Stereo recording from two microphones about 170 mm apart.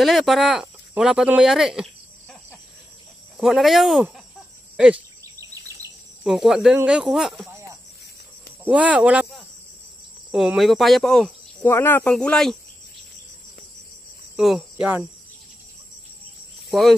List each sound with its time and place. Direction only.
0.0 s speech: centre (ahead or behind)
3.3 s speech: centre (ahead or behind)
4.7 s cricket: 5° right (ahead or behind)
5.2 s insect: 20° right (ahead or behind)
6.2 s speech: centre (ahead or behind)
8.6 s speech: 5° right (ahead or behind)
14.3 s speech: centre (ahead or behind)